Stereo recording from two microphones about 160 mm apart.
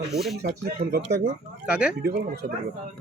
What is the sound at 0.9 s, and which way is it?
Speech, 80° right.